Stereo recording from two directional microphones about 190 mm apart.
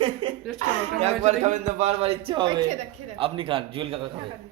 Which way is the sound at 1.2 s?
40° right (ahead or behind).